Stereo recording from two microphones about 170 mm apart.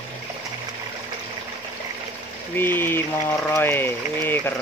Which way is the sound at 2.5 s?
10° left (ahead or behind).